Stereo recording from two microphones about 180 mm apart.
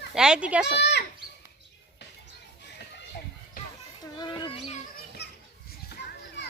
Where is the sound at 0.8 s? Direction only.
70° left (ahead or behind).